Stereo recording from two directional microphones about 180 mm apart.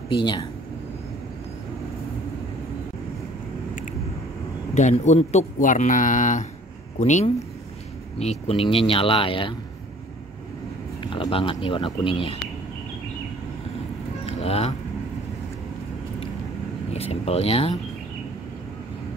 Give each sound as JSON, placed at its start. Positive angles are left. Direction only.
{"t": 0.1, "sound": "speech", "side_deg": 25}
{"t": 4.7, "sound": "speech", "side_deg": 40}
{"t": 11.1, "sound": "speech", "side_deg": 30}
{"t": 14.2, "sound": "vehicle", "side_deg": 35}
{"t": 16.9, "sound": "speech", "side_deg": 35}